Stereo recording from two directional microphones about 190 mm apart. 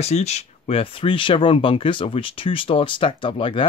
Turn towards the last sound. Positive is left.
turn(degrees=25)  # may be behind; listen again after turning